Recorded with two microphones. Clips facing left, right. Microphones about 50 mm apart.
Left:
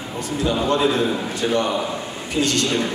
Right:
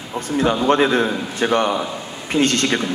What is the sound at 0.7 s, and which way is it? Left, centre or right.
A man's voice, right.